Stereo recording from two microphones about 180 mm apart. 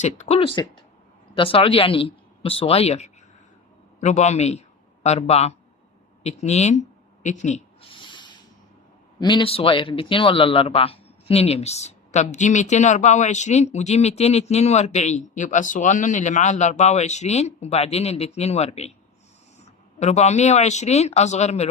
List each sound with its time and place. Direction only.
0.0 s speech: 35° left (ahead or behind)
7.2 s a sound: 40° left (ahead or behind); by 8.4 s 25° left (ahead or behind)
9.2 s speech: 30° left (ahead or behind)